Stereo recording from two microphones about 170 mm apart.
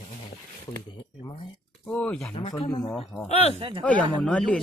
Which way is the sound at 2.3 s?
30° left (ahead or behind).